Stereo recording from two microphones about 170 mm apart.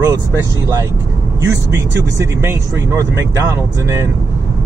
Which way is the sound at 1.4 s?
15° right (ahead or behind).